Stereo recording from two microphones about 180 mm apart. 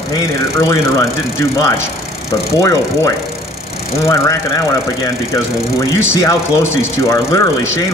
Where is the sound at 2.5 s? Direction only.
15° left (ahead or behind).